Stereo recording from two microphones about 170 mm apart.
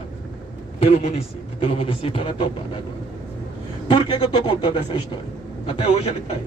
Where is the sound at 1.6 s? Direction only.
30° left (ahead or behind).